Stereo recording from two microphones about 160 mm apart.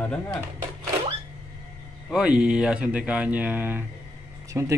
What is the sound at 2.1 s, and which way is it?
Speech, 5° right (ahead or behind).